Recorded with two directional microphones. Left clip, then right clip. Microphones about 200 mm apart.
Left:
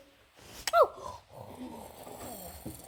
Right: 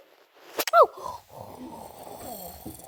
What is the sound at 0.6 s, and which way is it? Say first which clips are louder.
Snoring: right 6 dB; 30° right (ahead or behind).